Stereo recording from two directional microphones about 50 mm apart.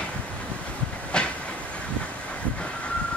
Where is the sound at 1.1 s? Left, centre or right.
Centre.